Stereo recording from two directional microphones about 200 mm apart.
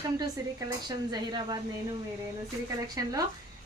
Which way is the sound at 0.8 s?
20° right (ahead or behind).